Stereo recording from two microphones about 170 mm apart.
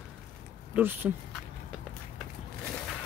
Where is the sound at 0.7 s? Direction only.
10° right (ahead or behind).